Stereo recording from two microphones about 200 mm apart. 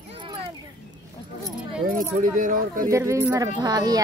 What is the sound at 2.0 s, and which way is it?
Speech, 40° right (ahead or behind).